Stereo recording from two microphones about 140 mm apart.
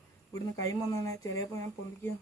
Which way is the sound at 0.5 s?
25° left (ahead or behind).